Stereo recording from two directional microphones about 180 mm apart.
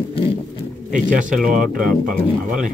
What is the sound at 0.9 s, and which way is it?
Speech, centre (ahead or behind).